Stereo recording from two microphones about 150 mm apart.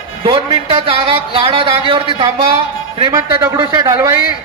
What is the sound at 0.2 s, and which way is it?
A man's voice, 35° right (ahead or behind).